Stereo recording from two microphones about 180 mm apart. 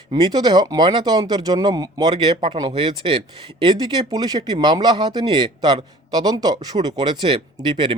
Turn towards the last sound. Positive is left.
turn(degrees=-25)  # may be behind; listen again after turning